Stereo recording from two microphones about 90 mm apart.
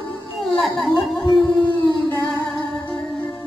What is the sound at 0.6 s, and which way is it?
Speech, centre (ahead or behind).